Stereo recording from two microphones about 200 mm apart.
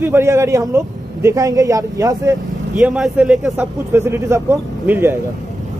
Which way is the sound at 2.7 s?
Centre (ahead or behind).